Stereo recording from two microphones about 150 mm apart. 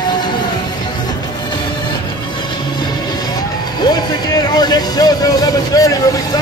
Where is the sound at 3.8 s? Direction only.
25° left (ahead or behind).